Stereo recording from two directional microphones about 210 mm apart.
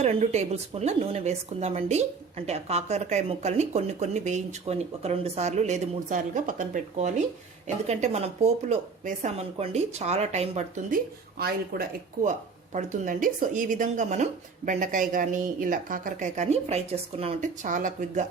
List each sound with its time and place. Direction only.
0.0 s speech: 30° right (ahead or behind)
11.3 s speech: 45° right (ahead or behind)